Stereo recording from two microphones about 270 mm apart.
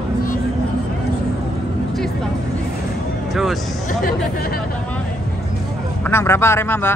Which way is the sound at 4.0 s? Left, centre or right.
Left.